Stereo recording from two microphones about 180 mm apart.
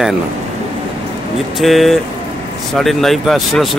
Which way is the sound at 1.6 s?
Centre (ahead or behind).